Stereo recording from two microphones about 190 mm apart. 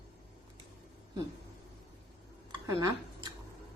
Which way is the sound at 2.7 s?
20° right (ahead or behind).